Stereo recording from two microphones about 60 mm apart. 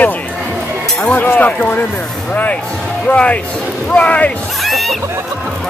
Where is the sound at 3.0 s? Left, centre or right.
Left.